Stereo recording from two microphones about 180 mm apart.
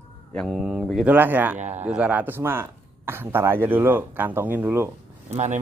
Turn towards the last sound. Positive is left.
turn(degrees=-40)  # may be behind; listen again after turning